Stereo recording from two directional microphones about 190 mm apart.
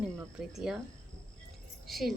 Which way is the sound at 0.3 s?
Centre (ahead or behind).